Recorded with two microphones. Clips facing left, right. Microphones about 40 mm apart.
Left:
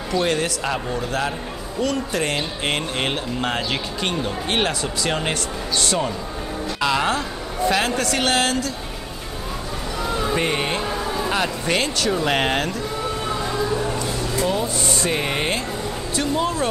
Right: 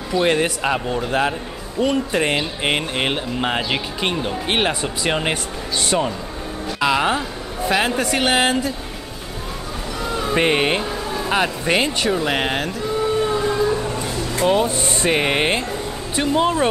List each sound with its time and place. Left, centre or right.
0.1 s a man's voice: right
10.0 s a sound: centre
10.3 s speech: right
11.2 s a man's voice: centre
14.3 s speech: right